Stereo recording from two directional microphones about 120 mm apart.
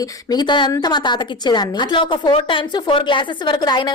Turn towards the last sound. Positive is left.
turn(degrees=35)  # may be behind; listen again after turning